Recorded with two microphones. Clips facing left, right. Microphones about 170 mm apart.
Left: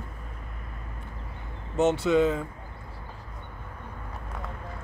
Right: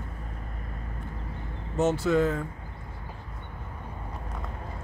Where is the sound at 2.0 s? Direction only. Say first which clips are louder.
Left 2 dB; 20° left (ahead or behind).